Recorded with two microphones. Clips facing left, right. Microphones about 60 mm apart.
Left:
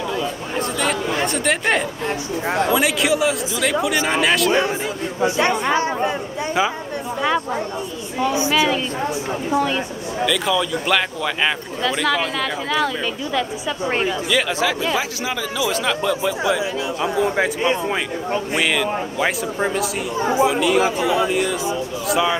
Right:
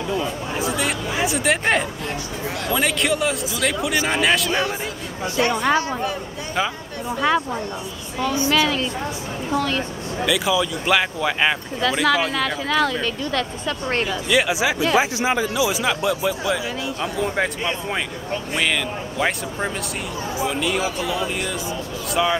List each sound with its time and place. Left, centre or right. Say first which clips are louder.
0.6 s speech: left 3 dB; centre
2.4 s speech: left 10 dB; left
2.7 s speech: even; centre
4.5 s speech: left 4 dB; centre
7.2 s speech: right 1 dB; centre
8.2 s a woman's voice: left 1 dB; centre
10.2 s speech: even; centre
14.3 s speech: right 3 dB; centre
15.0 s speech: right 4 dB; right
15.5 s speech: even; centre
16.4 s a woman's voice: left 3 dB; centre
20.2 s speech: left 10 dB; left
20.4 s speech: left 3 dB; centre